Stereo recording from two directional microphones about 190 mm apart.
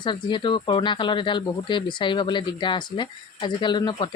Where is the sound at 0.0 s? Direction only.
25° left (ahead or behind).